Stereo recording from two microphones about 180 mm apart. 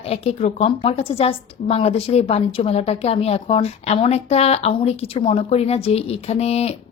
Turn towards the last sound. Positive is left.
turn(degrees=35)  # may be behind; listen again after turning